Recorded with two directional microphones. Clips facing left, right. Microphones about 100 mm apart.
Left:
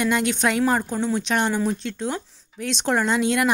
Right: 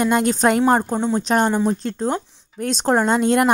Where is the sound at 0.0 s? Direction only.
40° right (ahead or behind).